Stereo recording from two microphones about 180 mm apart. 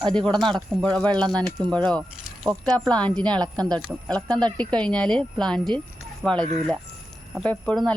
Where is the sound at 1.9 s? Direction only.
5° left (ahead or behind).